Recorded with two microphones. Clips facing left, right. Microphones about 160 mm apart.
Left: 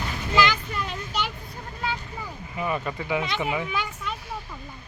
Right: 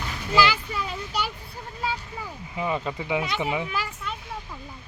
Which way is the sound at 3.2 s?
Centre (ahead or behind).